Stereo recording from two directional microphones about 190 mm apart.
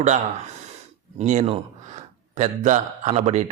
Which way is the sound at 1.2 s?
40° right (ahead or behind).